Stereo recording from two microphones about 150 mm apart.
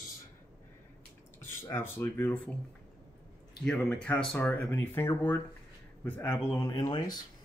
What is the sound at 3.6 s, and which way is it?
Speech, 5° left (ahead or behind).